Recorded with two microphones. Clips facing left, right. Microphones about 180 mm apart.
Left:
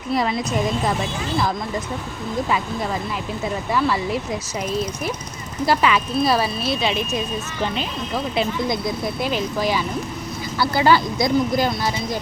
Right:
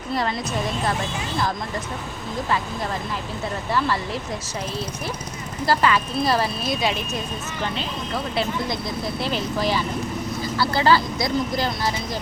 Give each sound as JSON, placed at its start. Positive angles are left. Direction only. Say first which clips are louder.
{"t": 0.1, "sound": "speech", "louder": "left 3 dB", "side_deg": 10}
{"t": 3.7, "sound": "speech", "louder": "left 3 dB", "side_deg": 10}
{"t": 5.6, "sound": "speech", "louder": "left 1 dB", "side_deg": 10}
{"t": 7.8, "sound": "speech", "louder": "left 2 dB", "side_deg": 15}